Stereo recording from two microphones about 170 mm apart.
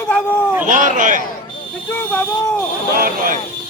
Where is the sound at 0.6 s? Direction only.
50° right (ahead or behind).